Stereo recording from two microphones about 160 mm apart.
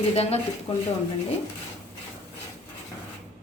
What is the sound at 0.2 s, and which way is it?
Speech, 40° left (ahead or behind).